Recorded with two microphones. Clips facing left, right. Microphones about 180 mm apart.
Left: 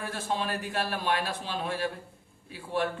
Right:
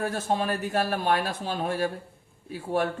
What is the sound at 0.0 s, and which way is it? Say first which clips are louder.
A man's voice: right 5 dB; 45° right (ahead or behind).